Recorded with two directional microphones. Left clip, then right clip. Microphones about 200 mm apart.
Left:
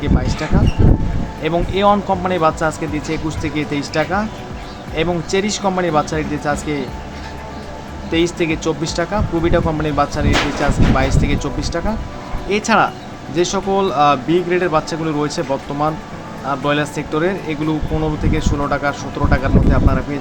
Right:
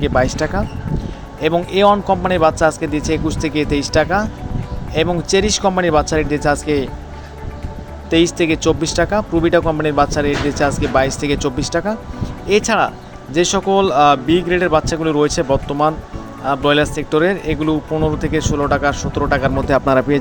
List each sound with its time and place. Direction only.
0.0 s speech: 40° right (ahead or behind)
8.1 s speech: 35° right (ahead or behind)